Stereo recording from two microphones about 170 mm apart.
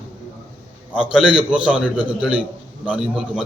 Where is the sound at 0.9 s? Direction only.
5° right (ahead or behind).